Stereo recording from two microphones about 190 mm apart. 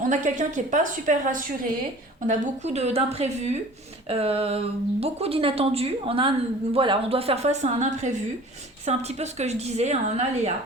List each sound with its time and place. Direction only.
0.0 s a woman's voice: 40° right (ahead or behind)